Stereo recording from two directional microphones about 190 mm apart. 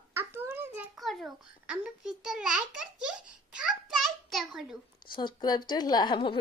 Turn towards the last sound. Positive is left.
turn(degrees=25)  # may be behind; listen again after turning